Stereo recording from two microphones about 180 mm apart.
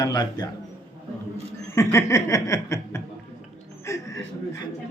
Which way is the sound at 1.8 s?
15° left (ahead or behind).